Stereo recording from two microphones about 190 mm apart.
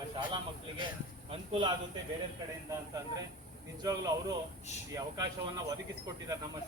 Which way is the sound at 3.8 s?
20° right (ahead or behind).